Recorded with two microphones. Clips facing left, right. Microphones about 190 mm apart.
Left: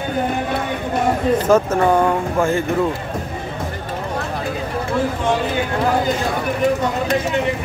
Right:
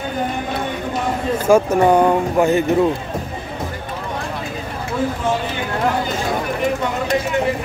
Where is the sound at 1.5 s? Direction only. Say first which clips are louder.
Right 4 dB; 15° right (ahead or behind).